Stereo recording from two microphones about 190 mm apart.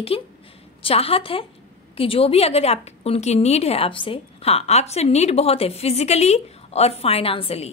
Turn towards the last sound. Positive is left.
turn(degrees=30)  # may be behind; listen again after turning